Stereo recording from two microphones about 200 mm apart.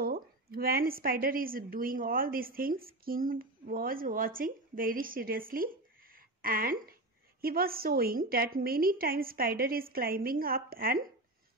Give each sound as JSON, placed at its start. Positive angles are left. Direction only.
{"t": 0.0, "sound": "a woman's voice", "side_deg": -50}